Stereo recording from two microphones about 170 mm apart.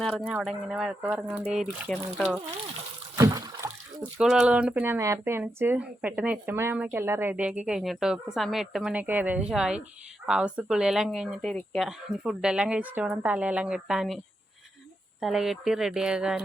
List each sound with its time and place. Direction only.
0.3 s speech: 5° right (ahead or behind)
1.5 s speech: centre (ahead or behind)
3.2 s rowboat: 20° right (ahead or behind)
4.2 s speech: 5° right (ahead or behind)
15.2 s speech: centre (ahead or behind)